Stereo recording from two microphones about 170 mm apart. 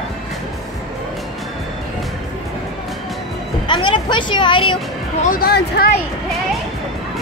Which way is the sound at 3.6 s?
30° left (ahead or behind).